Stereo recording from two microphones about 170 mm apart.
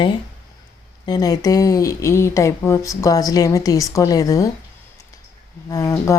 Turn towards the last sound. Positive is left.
turn(degrees=20)  # may be behind; listen again after turning